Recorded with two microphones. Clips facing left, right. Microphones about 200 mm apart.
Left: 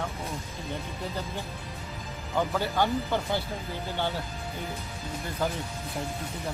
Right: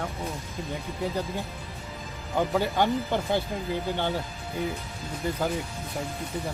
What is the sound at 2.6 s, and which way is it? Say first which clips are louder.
Speech: right 2 dB; 15° right (ahead or behind).